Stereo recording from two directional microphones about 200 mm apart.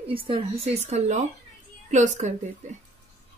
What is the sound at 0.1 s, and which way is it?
Speech, 30° right (ahead or behind).